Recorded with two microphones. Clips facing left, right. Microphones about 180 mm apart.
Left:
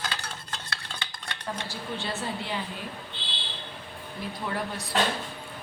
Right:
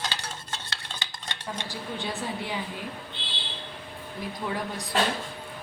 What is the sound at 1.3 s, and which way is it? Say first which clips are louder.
Dishes: even; 15° right (ahead or behind).